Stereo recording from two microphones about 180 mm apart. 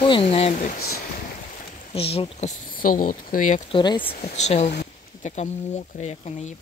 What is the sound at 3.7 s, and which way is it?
Speech, 25° left (ahead or behind).